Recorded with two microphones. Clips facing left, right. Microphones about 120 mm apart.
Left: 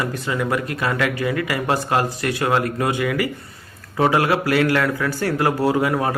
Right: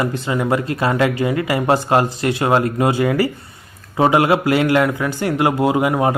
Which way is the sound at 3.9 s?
20° right (ahead or behind).